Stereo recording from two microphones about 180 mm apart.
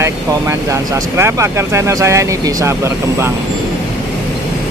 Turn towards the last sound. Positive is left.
turn(degrees=-15)  # may be behind; listen again after turning